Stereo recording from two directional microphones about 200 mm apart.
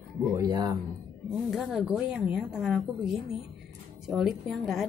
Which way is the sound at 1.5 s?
Centre (ahead or behind).